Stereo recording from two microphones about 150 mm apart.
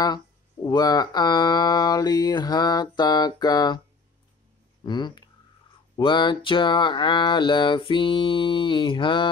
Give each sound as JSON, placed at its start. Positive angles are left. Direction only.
{"t": 0.7, "sound": "mantra", "side_deg": 25}
{"t": 4.8, "sound": "mantra", "side_deg": 30}
{"t": 5.9, "sound": "a sound", "side_deg": 30}